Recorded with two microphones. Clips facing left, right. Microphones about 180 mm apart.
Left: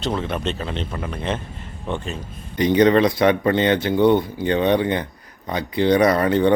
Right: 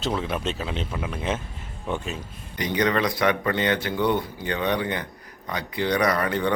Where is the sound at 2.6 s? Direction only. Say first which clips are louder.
Left 8 dB; 25° left (ahead or behind).